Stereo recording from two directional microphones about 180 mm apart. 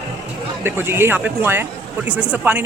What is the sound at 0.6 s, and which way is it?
Speech, 10° right (ahead or behind).